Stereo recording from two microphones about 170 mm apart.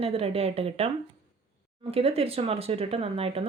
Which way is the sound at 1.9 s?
35° right (ahead or behind).